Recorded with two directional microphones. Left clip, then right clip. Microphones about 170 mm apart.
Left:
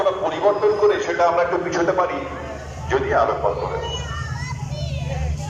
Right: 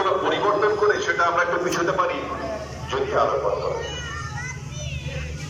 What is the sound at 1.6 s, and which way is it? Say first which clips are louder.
A man's voice: left 2 dB; 45° left (ahead or behind).